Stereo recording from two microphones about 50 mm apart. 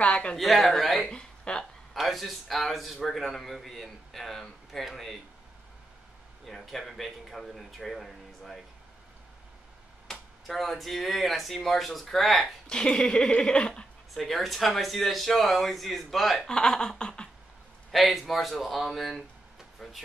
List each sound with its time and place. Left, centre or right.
0.0 s a sound: left
0.4 s speech: centre
1.0 s a sound: centre
2.0 s speech: centre
6.4 s speech: centre
10.0 s speech: centre
12.6 s speech: centre
14.1 s speech: centre
16.4 s speech: centre
17.9 s speech: centre